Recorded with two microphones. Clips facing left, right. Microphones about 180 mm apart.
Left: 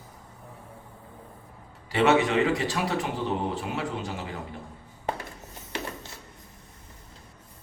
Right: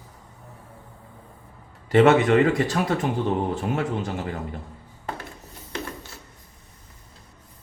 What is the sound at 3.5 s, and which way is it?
Speech, 50° right (ahead or behind).